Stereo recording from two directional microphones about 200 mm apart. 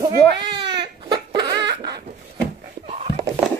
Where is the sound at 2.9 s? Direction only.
35° right (ahead or behind).